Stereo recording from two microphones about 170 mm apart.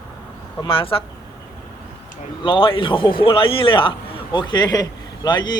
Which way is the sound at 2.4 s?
30° left (ahead or behind).